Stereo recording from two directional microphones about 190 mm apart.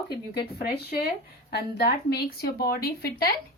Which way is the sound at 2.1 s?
55° left (ahead or behind).